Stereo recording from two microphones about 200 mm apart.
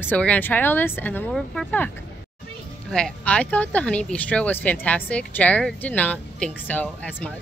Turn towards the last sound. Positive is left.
turn(degrees=5)  # may be behind; listen again after turning